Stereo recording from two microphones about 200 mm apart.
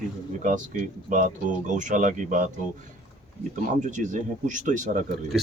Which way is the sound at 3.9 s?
40° right (ahead or behind).